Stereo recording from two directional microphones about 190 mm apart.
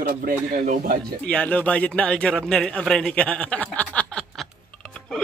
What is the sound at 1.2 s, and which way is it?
Speech, 5° left (ahead or behind).